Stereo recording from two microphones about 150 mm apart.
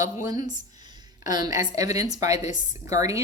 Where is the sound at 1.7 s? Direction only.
25° right (ahead or behind).